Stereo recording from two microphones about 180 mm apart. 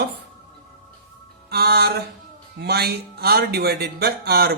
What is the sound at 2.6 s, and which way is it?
Speech, 60° right (ahead or behind).